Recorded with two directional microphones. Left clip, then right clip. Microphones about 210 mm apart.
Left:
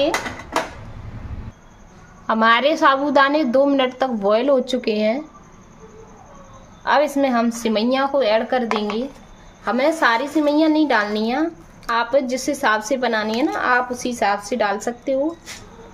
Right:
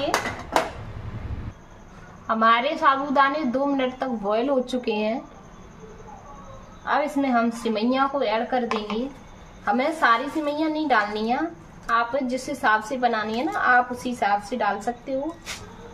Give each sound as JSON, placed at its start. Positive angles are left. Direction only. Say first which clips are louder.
{"t": 2.2, "sound": "a woman's voice", "louder": "left 4 dB", "side_deg": 50}
{"t": 6.8, "sound": "a woman's voice", "louder": "left 6 dB", "side_deg": 50}